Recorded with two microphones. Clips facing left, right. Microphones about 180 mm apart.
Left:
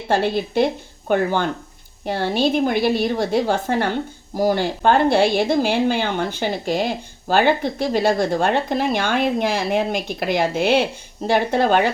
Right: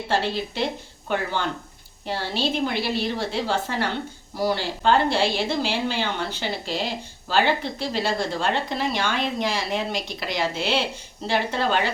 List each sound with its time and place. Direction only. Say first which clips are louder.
0.1 s a woman's voice: left 6 dB; 50° left (ahead or behind)